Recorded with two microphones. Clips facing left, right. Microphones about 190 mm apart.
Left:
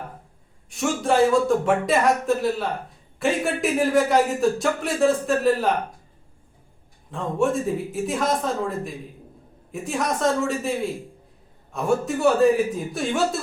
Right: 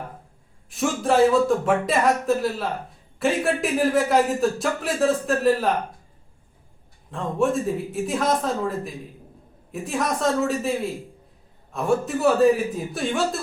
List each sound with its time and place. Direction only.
0.7 s speech: centre (ahead or behind)
7.1 s speech: centre (ahead or behind)